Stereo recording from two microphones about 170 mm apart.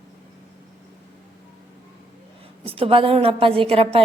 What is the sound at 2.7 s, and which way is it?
A woman's voice, 35° right (ahead or behind).